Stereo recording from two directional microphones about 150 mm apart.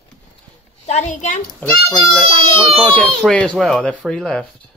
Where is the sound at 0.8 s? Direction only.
50° left (ahead or behind).